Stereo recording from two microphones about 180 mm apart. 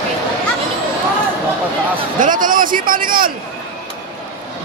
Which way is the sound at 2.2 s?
50° right (ahead or behind).